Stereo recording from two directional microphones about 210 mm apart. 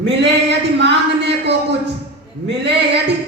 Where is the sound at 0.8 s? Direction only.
55° right (ahead or behind).